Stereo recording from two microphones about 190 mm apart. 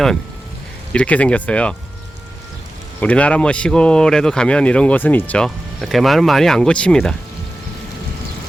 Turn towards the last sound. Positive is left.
turn(degrees=5)  # may be behind; listen again after turning